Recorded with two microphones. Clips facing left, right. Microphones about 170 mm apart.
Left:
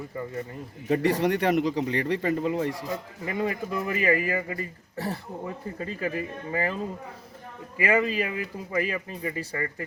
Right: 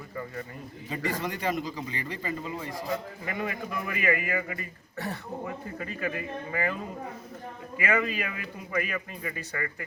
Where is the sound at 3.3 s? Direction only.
25° left (ahead or behind).